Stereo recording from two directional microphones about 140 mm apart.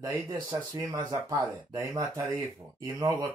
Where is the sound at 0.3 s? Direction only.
25° right (ahead or behind).